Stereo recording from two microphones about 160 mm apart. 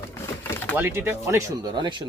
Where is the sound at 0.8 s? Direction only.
15° right (ahead or behind); by 2.0 s 30° right (ahead or behind).